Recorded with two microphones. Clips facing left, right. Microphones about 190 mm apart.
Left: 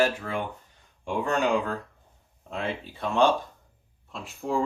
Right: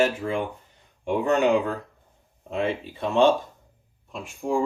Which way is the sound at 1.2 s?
20° right (ahead or behind).